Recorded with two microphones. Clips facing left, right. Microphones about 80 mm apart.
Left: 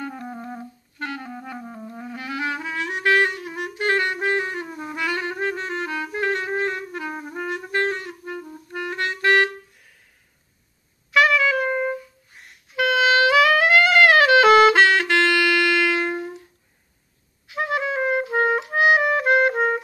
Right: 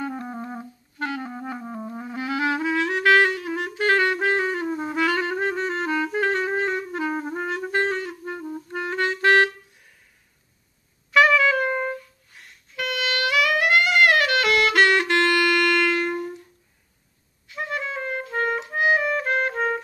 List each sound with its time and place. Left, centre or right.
0.0 s music: right
0.3 s music: centre
1.8 s clarinet: right
11.1 s brass instrument: centre
12.7 s music: left
13.3 s music: left
17.5 s clarinet: left
17.8 s clarinet: centre
18.7 s clarinet: left